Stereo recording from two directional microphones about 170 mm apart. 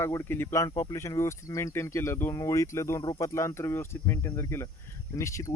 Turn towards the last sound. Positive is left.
turn(degrees=20)  # may be behind; listen again after turning